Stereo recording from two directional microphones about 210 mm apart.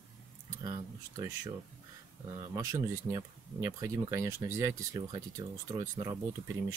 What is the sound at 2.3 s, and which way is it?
Speech, 15° right (ahead or behind).